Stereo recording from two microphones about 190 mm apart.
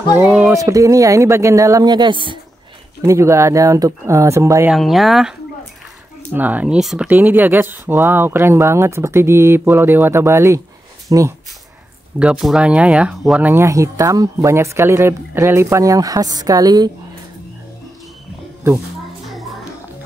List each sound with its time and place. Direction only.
0.1 s speech: 10° right (ahead or behind)
4.6 s speech: centre (ahead or behind)
6.3 s speech: 10° right (ahead or behind)
12.2 s speech: 5° right (ahead or behind); by 16.9 s 20° right (ahead or behind)